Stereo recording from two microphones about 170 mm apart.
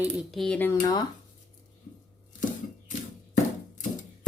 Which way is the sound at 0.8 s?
25° left (ahead or behind).